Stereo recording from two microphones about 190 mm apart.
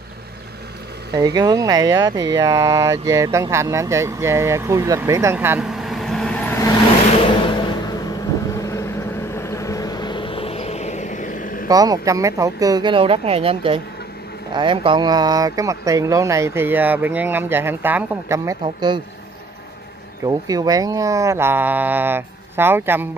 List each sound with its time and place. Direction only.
1.1 s speech: 20° right (ahead or behind); by 6.7 s 10° left (ahead or behind)
8.5 s vehicle: 15° left (ahead or behind); by 11.6 s 45° left (ahead or behind)
11.7 s speech: 20° right (ahead or behind)
20.2 s speech: 20° right (ahead or behind)